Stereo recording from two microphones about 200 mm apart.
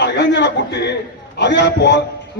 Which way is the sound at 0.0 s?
60° left (ahead or behind).